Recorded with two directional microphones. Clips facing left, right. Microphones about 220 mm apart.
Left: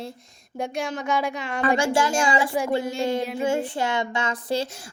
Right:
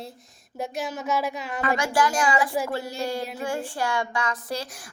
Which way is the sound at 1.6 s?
30° left (ahead or behind).